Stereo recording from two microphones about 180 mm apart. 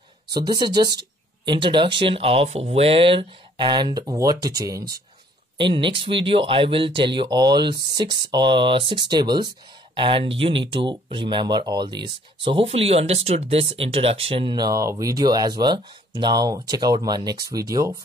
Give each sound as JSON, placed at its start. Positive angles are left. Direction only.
{"t": 0.5, "sound": "speech", "side_deg": -25}